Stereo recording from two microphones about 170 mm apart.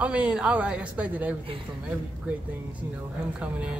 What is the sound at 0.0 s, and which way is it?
Speech, 5° right (ahead or behind).